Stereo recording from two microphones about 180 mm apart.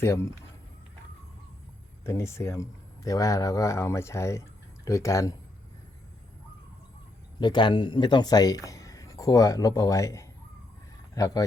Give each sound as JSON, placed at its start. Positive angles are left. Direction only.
{"t": 0.0, "sound": "speech", "side_deg": 15}
{"t": 2.0, "sound": "speech", "side_deg": 15}
{"t": 7.3, "sound": "a man's voice", "side_deg": 25}